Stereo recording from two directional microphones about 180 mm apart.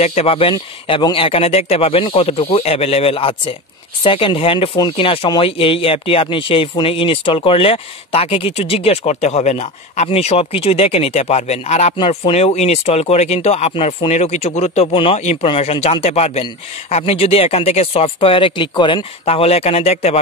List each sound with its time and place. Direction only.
0.0 s speech: 35° left (ahead or behind)